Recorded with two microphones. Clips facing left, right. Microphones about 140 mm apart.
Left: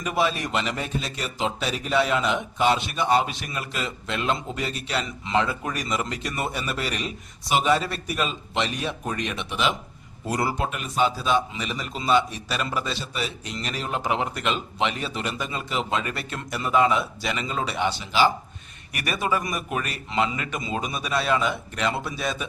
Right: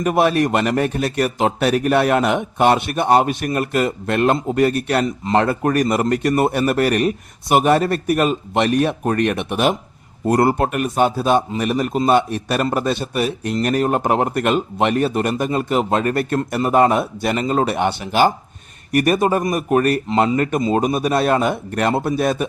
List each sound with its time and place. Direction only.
0.0 s a man's voice: 55° right (ahead or behind)